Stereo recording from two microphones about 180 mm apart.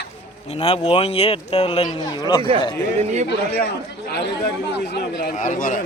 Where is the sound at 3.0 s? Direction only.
40° right (ahead or behind).